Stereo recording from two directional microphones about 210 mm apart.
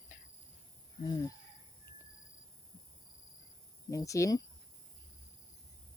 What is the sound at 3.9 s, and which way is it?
Speech, 15° left (ahead or behind).